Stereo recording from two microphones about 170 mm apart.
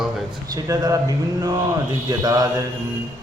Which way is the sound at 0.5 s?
20° right (ahead or behind).